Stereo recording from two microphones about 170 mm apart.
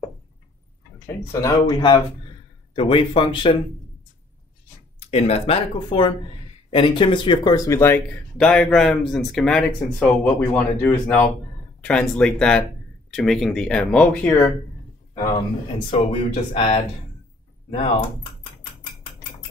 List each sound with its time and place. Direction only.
1.0 s speech: 15° left (ahead or behind)
2.7 s speech: 30° left (ahead or behind)
5.1 s speech: 40° left (ahead or behind); by 14.4 s 5° left (ahead or behind)
15.9 s speech: 35° left (ahead or behind)